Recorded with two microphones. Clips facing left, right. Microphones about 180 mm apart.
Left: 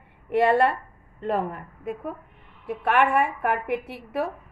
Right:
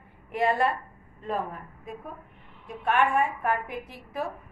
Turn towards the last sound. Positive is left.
turn(degrees=65)  # may be behind; listen again after turning